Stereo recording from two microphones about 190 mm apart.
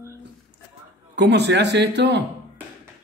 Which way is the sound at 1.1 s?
65° right (ahead or behind).